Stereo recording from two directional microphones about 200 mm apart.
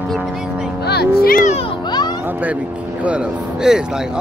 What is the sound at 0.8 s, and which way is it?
Speech, 55° left (ahead or behind).